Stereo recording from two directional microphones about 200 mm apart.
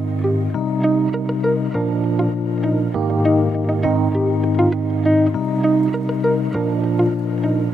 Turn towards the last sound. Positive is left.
turn(degrees=0)  # may be behind; listen again after turning